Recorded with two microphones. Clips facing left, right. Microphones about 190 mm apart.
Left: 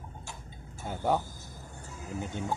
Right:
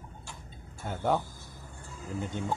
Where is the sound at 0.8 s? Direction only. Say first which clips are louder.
Even; 5° left (ahead or behind).